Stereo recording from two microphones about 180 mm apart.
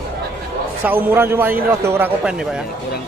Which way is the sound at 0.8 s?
10° right (ahead or behind).